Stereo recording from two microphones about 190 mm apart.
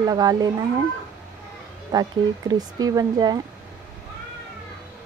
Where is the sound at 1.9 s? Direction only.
20° right (ahead or behind).